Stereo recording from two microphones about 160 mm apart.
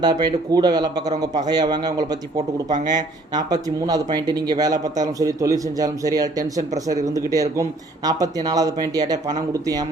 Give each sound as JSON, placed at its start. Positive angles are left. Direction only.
{"t": 0.0, "sound": "speech", "side_deg": -25}